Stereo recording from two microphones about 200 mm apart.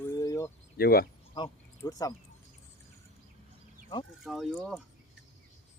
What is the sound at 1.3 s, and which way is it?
Speech, 20° left (ahead or behind).